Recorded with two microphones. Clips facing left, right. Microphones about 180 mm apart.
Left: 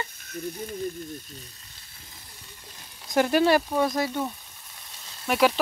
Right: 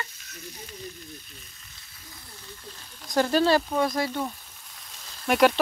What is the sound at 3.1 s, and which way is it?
Speech, 15° left (ahead or behind).